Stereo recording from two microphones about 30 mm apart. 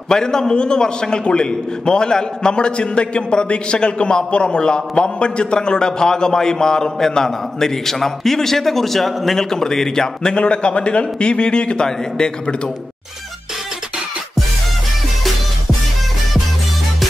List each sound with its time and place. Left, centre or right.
0.1 s a man's voice: left
10.3 s a man's voice: left